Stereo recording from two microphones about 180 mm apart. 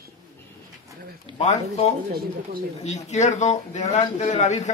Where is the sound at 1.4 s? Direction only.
40° left (ahead or behind).